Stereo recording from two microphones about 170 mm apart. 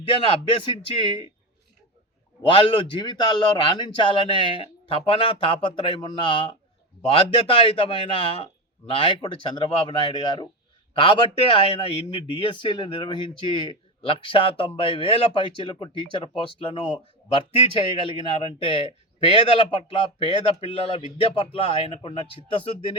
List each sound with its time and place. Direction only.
0.0 s speech: 30° left (ahead or behind)
2.4 s a man's voice: 30° left (ahead or behind)
18.2 s speech: 30° left (ahead or behind)